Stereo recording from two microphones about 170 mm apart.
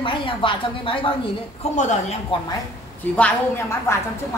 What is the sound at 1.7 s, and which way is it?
Speech, 45° left (ahead or behind).